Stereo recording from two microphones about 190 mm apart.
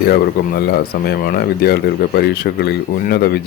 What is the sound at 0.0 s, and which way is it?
Speech, 55° left (ahead or behind).